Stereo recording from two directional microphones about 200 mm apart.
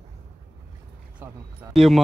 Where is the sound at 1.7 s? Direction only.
Centre (ahead or behind).